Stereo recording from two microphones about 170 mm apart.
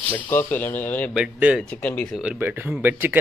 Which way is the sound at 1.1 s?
5° right (ahead or behind).